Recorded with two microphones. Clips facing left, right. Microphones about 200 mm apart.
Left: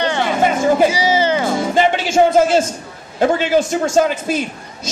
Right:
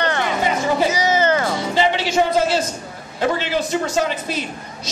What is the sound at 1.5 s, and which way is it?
Music, 50° left (ahead or behind).